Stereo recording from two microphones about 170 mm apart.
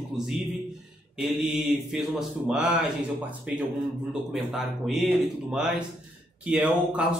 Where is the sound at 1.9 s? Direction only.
Centre (ahead or behind).